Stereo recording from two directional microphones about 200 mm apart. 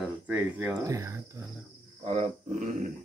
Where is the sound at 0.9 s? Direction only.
15° right (ahead or behind).